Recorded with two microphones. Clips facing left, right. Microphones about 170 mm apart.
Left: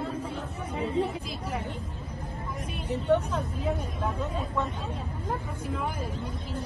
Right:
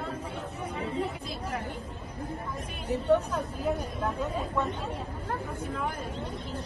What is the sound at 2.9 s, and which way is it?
Speech, centre (ahead or behind).